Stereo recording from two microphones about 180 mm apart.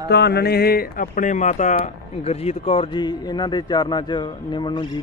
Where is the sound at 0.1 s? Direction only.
65° left (ahead or behind).